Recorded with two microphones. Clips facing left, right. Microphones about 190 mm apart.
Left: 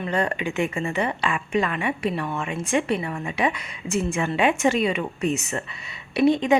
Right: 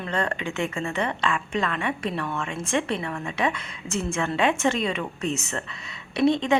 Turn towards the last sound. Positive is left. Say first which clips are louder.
# left 2 dB
turn(degrees=15)  # may be behind; listen again after turning